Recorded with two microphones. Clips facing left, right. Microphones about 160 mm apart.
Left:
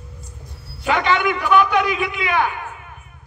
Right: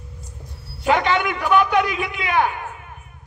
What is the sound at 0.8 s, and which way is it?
A man's voice, 45° right (ahead or behind).